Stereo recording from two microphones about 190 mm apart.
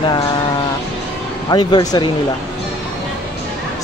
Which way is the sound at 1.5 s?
25° left (ahead or behind).